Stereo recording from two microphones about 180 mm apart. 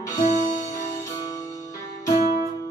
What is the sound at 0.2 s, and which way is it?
Music, 45° left (ahead or behind).